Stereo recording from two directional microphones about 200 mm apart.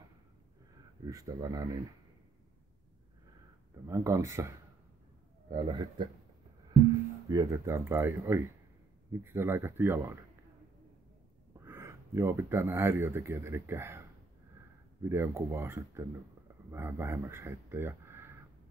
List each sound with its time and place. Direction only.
1.0 s speech: 15° right (ahead or behind)
3.8 s speech: 15° right (ahead or behind)
7.2 s speech: 15° right (ahead or behind)
11.6 s speech: 10° right (ahead or behind)
15.0 s speech: 10° right (ahead or behind)